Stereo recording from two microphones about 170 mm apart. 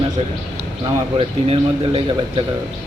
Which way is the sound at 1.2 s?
35° right (ahead or behind).